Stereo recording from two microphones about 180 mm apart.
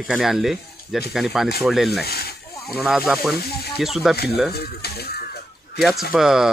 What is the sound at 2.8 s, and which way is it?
Speech, centre (ahead or behind).